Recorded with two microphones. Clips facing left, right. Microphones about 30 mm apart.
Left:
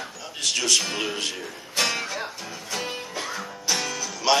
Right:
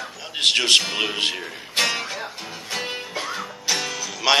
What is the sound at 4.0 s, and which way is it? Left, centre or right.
Music, centre.